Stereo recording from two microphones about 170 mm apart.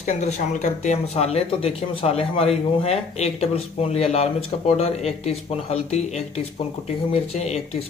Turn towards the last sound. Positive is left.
turn(degrees=40)  # may be behind; listen again after turning